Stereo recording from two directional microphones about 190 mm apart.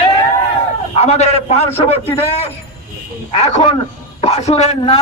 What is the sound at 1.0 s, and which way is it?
A man's voice, 35° left (ahead or behind).